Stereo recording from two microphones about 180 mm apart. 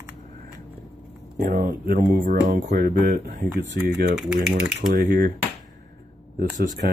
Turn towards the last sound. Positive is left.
turn(degrees=-45)  # may be behind; listen again after turning